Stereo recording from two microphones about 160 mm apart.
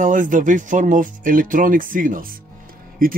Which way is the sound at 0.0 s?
55° right (ahead or behind).